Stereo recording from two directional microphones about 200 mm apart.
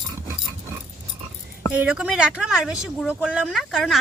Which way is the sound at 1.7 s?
5° right (ahead or behind).